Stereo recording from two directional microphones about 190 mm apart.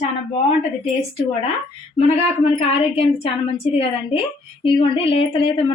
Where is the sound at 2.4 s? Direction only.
30° left (ahead or behind).